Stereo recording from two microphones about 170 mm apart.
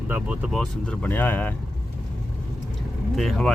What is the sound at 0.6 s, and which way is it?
Speech, 5° left (ahead or behind).